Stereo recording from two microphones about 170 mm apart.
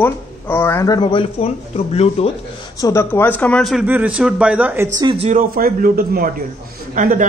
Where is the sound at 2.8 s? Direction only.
15° left (ahead or behind); by 4.9 s 10° right (ahead or behind).